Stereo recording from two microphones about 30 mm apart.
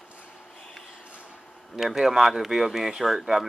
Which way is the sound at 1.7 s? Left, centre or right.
Centre.